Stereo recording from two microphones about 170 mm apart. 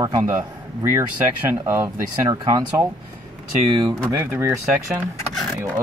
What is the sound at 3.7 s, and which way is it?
Speech, 25° right (ahead or behind).